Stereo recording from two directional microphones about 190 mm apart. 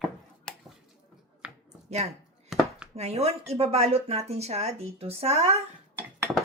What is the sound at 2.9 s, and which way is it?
Speech, 35° right (ahead or behind).